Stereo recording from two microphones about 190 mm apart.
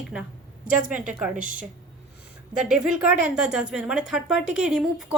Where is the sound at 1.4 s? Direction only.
45° right (ahead or behind).